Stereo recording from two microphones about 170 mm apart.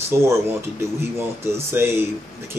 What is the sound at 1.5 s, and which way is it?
Speech, 15° right (ahead or behind).